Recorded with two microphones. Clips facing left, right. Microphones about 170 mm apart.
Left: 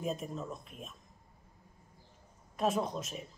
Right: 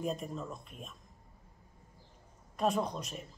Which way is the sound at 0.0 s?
Centre (ahead or behind).